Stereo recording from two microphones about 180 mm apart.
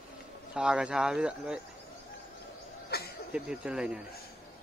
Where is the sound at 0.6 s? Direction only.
5° right (ahead or behind).